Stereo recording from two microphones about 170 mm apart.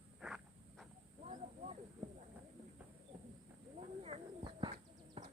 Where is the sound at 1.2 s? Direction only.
40° right (ahead or behind).